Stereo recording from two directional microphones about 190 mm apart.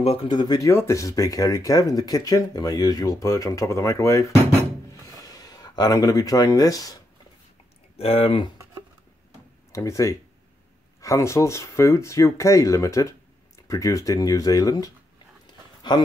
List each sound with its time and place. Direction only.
0.0 s speech: 30° left (ahead or behind)
8.0 s speech: 30° left (ahead or behind)
9.7 s speech: 15° left (ahead or behind)
15.9 s speech: 20° left (ahead or behind)